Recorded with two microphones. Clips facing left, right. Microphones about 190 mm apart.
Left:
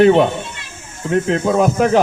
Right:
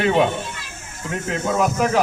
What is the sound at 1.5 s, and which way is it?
Speech, 30° left (ahead or behind).